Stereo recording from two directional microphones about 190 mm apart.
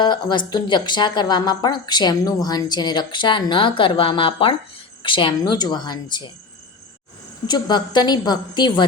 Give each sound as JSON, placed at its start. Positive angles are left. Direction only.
{"t": 0.0, "sound": "a woman's voice", "side_deg": 25}
{"t": 7.4, "sound": "a woman's voice", "side_deg": 20}